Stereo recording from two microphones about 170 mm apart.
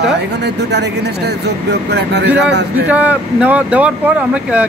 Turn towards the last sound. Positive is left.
turn(degrees=-5)  # may be behind; listen again after turning